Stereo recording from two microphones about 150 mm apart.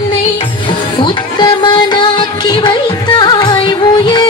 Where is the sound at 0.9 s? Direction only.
30° left (ahead or behind).